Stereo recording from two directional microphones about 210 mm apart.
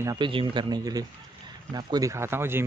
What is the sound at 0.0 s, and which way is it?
Speech, 20° right (ahead or behind).